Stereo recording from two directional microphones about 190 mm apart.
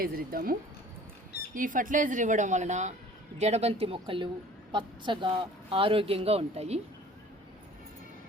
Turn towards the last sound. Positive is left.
turn(degrees=-35)  # may be behind; listen again after turning